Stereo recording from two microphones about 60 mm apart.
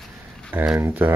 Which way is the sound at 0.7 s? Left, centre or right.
Right.